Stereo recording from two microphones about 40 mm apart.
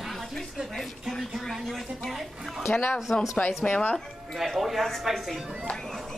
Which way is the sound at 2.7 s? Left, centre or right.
Left.